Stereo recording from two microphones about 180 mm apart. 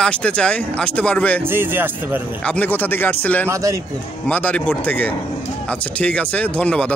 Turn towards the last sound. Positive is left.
turn(degrees=5)  # may be behind; listen again after turning